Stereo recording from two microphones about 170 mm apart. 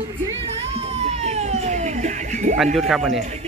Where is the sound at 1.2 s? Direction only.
40° right (ahead or behind).